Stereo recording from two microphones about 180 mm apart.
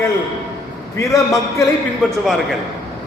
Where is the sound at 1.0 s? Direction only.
15° left (ahead or behind).